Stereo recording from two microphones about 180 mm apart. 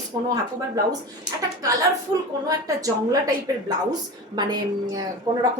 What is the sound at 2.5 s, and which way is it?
Speech, 20° right (ahead or behind).